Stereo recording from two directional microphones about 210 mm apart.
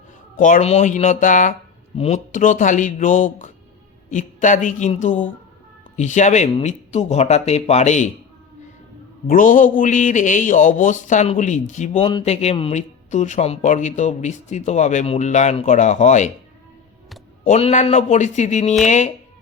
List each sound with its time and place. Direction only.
0.3 s speech: 40° left (ahead or behind)
9.3 s speech: 40° left (ahead or behind)
17.4 s speech: 30° left (ahead or behind)